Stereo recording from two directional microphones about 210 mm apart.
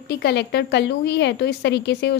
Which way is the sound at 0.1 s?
55° left (ahead or behind).